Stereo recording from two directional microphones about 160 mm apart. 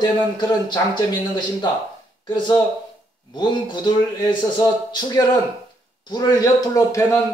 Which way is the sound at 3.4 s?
30° left (ahead or behind).